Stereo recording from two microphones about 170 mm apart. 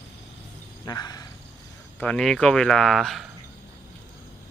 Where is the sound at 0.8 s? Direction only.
25° left (ahead or behind).